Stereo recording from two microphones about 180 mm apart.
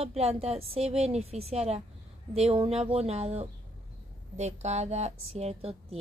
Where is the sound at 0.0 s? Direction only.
35° right (ahead or behind).